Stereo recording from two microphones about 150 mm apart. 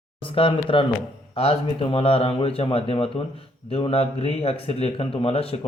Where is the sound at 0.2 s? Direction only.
35° left (ahead or behind).